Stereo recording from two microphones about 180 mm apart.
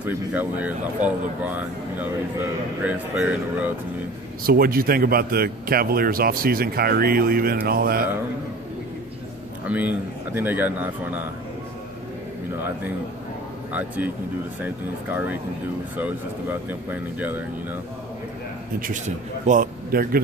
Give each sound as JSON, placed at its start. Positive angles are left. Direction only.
{"t": 0.0, "sound": "speech", "side_deg": -10}
{"t": 4.4, "sound": "speech", "side_deg": -55}
{"t": 9.7, "sound": "speech", "side_deg": -10}
{"t": 13.7, "sound": "speech", "side_deg": -10}
{"t": 16.0, "sound": "speech", "side_deg": -10}
{"t": 18.8, "sound": "speech", "side_deg": -45}